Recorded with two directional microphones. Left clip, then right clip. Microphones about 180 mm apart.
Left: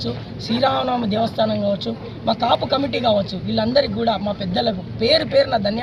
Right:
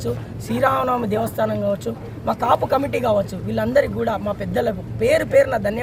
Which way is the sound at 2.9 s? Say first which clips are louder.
Left 1 dB; 40° right (ahead or behind).